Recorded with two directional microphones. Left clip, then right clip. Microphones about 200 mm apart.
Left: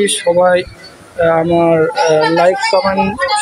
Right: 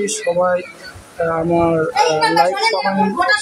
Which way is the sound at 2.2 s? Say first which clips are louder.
Left 3 dB; 25° left (ahead or behind).